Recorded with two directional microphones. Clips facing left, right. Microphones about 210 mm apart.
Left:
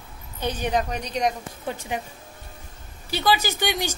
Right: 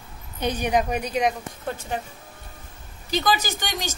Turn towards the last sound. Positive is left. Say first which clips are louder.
# left 4 dB
turn(degrees=10)  # may be behind; listen again after turning